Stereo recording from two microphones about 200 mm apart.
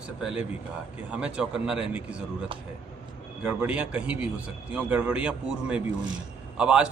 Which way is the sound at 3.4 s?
5° right (ahead or behind).